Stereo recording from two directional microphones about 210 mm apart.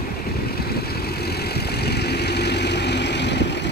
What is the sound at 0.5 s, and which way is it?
Vehicle, 50° left (ahead or behind).